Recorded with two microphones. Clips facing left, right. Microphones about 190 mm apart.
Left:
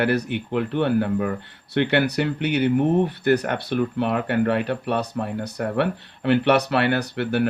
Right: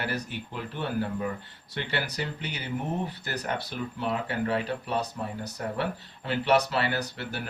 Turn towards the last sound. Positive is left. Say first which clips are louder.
# left 11 dB
turn(degrees=65)  # may be behind; listen again after turning